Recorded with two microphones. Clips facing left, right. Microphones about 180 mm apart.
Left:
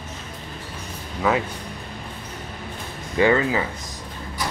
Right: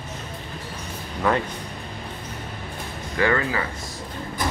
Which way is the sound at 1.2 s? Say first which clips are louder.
Left 1 dB; 5° left (ahead or behind).